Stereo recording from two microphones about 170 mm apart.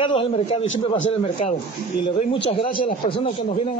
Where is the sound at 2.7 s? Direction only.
55° left (ahead or behind).